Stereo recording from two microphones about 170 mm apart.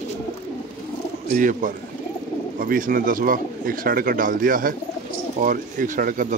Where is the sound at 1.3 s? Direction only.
50° right (ahead or behind).